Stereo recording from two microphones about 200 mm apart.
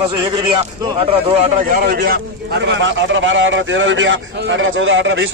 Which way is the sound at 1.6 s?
50° right (ahead or behind).